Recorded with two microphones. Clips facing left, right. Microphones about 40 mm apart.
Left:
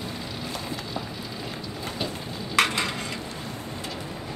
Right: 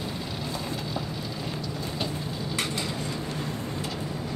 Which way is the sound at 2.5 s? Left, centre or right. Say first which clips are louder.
Left 9 dB; left.